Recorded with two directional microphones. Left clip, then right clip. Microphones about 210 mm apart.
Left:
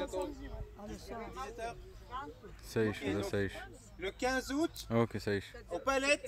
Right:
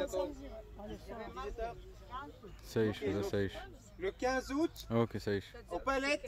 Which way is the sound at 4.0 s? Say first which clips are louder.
Even; 30° left (ahead or behind).